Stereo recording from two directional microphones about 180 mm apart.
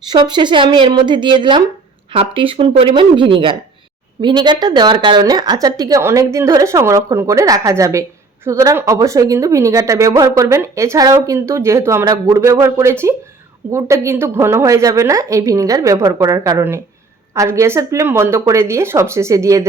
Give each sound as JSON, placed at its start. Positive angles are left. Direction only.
{"t": 0.1, "sound": "a woman's voice", "side_deg": -25}